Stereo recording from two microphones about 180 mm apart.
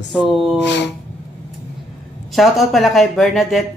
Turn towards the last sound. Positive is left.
turn(degrees=0)  # may be behind; listen again after turning